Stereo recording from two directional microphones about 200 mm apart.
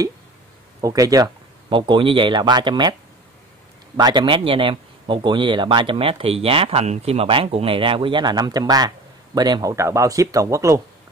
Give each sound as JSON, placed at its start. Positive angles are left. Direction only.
{"t": 0.7, "sound": "a man's voice", "side_deg": -15}